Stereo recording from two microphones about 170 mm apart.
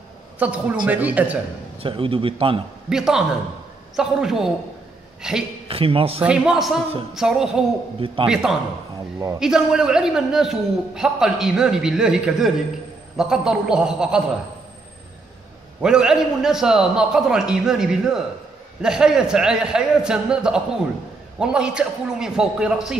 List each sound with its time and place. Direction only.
0.4 s speech: 10° right (ahead or behind)
1.8 s a man's voice: 30° right (ahead or behind)
2.9 s a man's voice: 5° right (ahead or behind)
5.7 s a man's voice: 35° right (ahead or behind)
6.2 s a man's voice: 5° right (ahead or behind)
15.8 s a man's voice: 5° right (ahead or behind)